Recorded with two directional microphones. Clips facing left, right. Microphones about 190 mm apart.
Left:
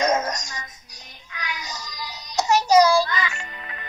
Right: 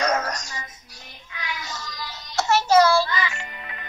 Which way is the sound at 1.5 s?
15° left (ahead or behind).